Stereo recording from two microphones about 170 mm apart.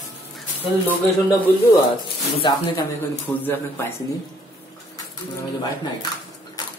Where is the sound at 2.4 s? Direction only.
25° left (ahead or behind).